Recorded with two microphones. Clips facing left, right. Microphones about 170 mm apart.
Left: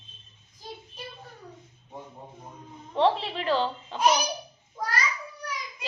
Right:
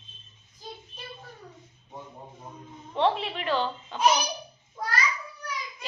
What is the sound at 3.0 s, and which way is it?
A child's voice, 35° left (ahead or behind).